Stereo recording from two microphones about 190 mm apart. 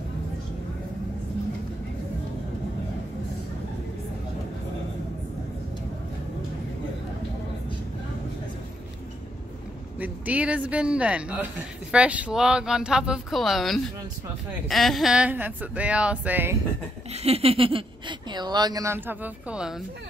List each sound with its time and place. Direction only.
9.9 s speech: 10° right (ahead or behind)
17.1 s speech: 30° right (ahead or behind); by 19.8 s 5° right (ahead or behind)